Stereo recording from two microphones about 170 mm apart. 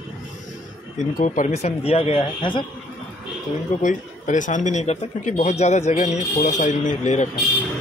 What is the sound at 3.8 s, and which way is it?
Speech, 50° left (ahead or behind).